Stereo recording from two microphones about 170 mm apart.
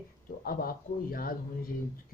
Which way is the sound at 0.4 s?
60° left (ahead or behind).